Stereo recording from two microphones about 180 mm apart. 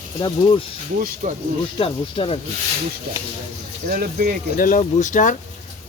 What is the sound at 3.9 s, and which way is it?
Speech, 55° right (ahead or behind).